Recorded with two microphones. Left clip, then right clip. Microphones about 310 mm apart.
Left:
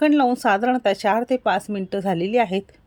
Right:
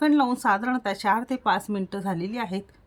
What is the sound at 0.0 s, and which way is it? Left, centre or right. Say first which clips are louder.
Speech: left 4 dB; centre.